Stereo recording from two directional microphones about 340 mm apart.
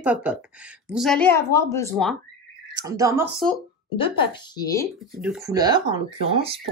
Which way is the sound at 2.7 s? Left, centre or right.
Centre.